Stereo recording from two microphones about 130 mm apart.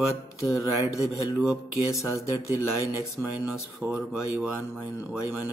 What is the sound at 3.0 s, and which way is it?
Speech, 5° right (ahead or behind).